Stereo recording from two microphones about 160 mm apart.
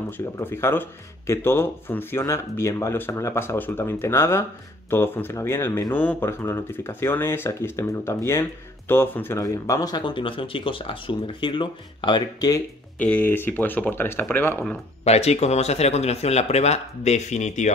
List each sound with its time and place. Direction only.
0.4 s speech: 15° left (ahead or behind)
13.0 s speech: 10° left (ahead or behind)
15.0 s speech: 40° left (ahead or behind)